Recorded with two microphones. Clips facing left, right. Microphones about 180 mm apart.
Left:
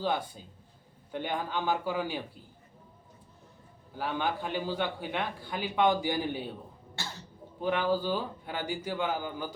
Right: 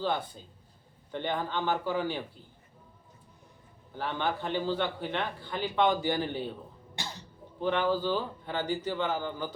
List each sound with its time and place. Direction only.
0.0 s a man's voice: 10° left (ahead or behind)
3.9 s a man's voice: 10° left (ahead or behind)
7.0 s cough: 15° right (ahead or behind)
7.6 s a man's voice: 10° left (ahead or behind)